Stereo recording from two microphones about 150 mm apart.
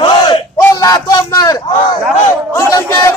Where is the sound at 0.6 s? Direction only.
20° left (ahead or behind).